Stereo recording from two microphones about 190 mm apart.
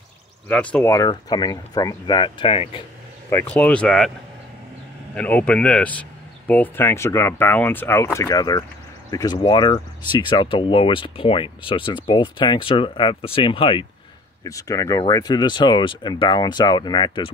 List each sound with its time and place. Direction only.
0.5 s speech: 5° left (ahead or behind)
0.9 s speech: 20° left (ahead or behind)
3.3 s speech: 10° left (ahead or behind)
5.1 s speech: 10° left (ahead or behind); by 17.3 s 25° left (ahead or behind)